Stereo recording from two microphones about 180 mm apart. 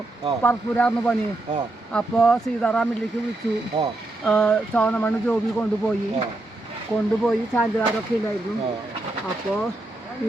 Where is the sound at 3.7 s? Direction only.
25° right (ahead or behind).